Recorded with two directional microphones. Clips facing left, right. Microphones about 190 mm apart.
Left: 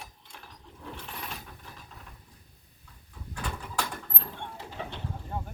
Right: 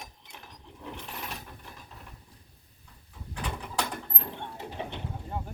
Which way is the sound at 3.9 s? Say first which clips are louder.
Right 2 dB; 20° right (ahead or behind).